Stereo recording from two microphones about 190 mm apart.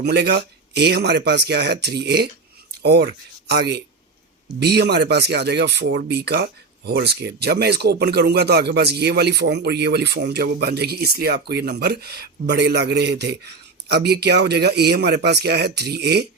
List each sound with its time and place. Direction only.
0.0 s speech: 60° right (ahead or behind)